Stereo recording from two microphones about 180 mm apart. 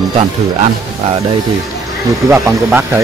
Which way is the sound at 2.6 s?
10° right (ahead or behind).